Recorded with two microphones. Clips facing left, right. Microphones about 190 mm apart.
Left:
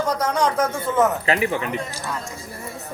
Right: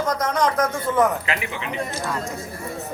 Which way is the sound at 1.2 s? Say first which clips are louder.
Left 7 dB; 35° left (ahead or behind).